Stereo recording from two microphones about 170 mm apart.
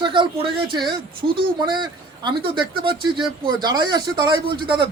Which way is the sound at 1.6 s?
25° right (ahead or behind).